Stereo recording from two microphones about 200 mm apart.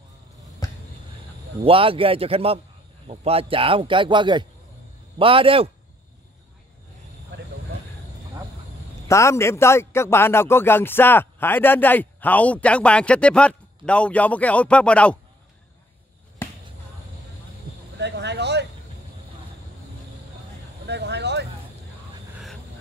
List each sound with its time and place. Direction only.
0.6 s a sound: 15° left (ahead or behind)
1.6 s a man's voice: 25° right (ahead or behind)
9.0 s a man's voice: 15° left (ahead or behind)
16.4 s basketball bounce: 10° left (ahead or behind)
17.9 s a sound: 60° right (ahead or behind)
20.8 s vehicle: 55° right (ahead or behind)